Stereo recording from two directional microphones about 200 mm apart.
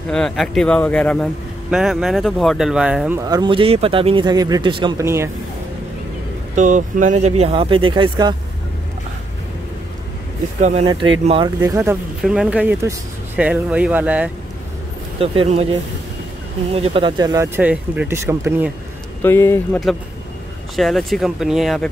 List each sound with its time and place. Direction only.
0.1 s speech: 5° left (ahead or behind)
3.2 s speech: 20° right (ahead or behind)
5.0 s speech: 15° right (ahead or behind)
6.5 s speech: 40° right (ahead or behind); by 8.4 s 20° right (ahead or behind)
10.6 s speech: 30° right (ahead or behind); by 12.0 s 15° right (ahead or behind)
12.2 s speech: 5° right (ahead or behind)
15.1 s speech: 30° right (ahead or behind)
17.2 s speech: 15° right (ahead or behind)
19.2 s speech: 15° left (ahead or behind)
20.7 s speech: centre (ahead or behind)